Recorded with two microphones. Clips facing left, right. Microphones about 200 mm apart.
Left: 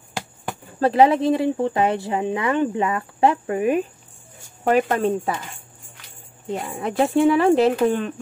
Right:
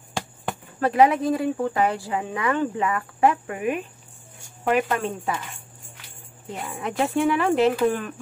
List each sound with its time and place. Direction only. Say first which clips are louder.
0.7 s speech: left 3 dB; 30° left (ahead or behind)
6.6 s speech: left 3 dB; 35° left (ahead or behind)